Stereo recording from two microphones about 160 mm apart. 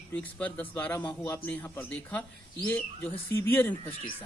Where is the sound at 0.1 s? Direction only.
10° left (ahead or behind).